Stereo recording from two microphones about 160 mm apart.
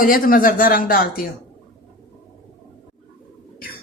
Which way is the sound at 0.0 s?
60° left (ahead or behind).